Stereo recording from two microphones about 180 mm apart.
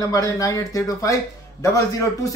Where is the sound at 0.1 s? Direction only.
20° left (ahead or behind).